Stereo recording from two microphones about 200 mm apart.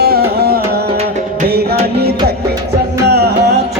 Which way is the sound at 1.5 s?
50° right (ahead or behind).